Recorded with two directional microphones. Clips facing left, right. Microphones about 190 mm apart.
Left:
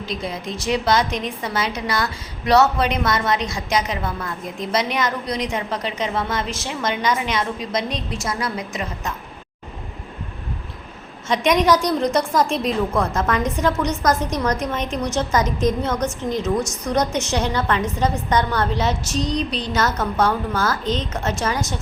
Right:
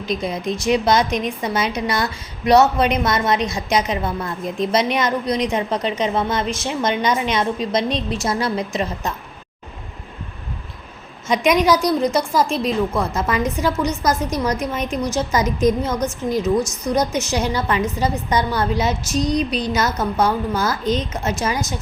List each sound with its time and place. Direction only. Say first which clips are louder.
0.0 s a woman's voice: right 4 dB; 20° right (ahead or behind)
11.3 s a woman's voice: right 1 dB; 10° right (ahead or behind)